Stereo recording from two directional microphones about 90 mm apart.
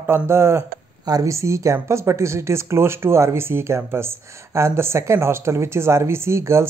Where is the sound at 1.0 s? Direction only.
40° right (ahead or behind).